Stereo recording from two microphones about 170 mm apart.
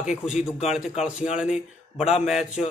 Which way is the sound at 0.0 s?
5° right (ahead or behind).